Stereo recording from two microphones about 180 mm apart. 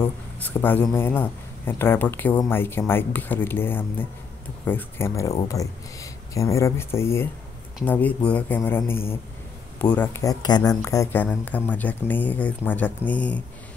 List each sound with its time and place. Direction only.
0.0 s speech: 10° left (ahead or behind)